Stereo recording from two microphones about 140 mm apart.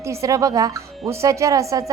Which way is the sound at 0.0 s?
20° right (ahead or behind).